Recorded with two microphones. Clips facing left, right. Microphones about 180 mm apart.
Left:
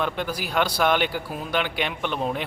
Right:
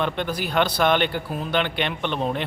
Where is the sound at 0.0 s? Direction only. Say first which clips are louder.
Right 2 dB; 10° left (ahead or behind).